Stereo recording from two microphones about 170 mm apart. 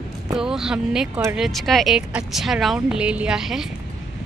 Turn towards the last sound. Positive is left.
turn(degrees=0)  # may be behind; listen again after turning